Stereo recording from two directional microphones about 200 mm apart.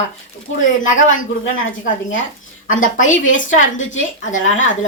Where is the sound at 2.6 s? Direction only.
40° left (ahead or behind).